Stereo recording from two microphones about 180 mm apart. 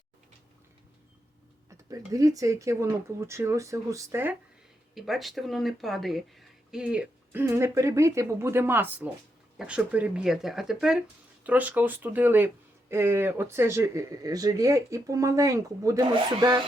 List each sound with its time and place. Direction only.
1.9 s speech: 20° right (ahead or behind)
4.9 s speech: centre (ahead or behind); by 16.6 s 25° right (ahead or behind)